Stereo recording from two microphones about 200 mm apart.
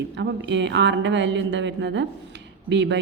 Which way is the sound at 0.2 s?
60° right (ahead or behind).